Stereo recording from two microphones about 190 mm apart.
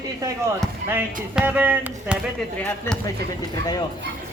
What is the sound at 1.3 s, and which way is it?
Speech, 10° right (ahead or behind).